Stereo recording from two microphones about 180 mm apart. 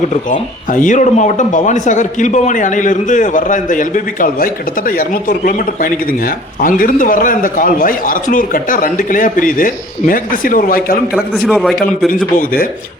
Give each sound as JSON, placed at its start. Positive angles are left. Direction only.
{"t": 0.1, "sound": "speech", "side_deg": 45}
{"t": 11.5, "sound": "a man's voice", "side_deg": 0}